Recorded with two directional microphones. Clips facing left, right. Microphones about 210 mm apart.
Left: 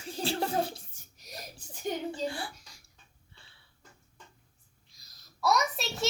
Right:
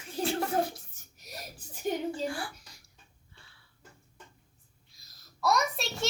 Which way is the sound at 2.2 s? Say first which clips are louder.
Even; 25° left (ahead or behind).